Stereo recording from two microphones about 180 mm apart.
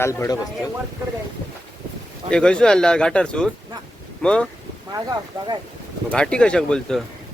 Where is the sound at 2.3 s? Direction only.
5° left (ahead or behind).